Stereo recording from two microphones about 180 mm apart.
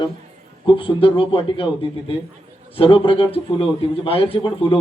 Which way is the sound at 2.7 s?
30° left (ahead or behind).